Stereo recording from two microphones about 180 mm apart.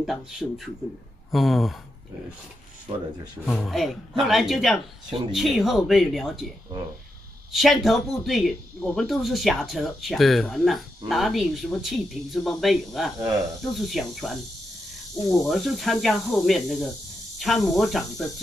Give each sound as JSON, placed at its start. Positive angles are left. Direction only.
{"t": 0.0, "sound": "speech", "side_deg": 0}
{"t": 2.9, "sound": "speech", "side_deg": -30}
{"t": 3.4, "sound": "speech", "side_deg": 0}
{"t": 7.5, "sound": "speech", "side_deg": 0}
{"t": 15.4, "sound": "speech", "side_deg": 0}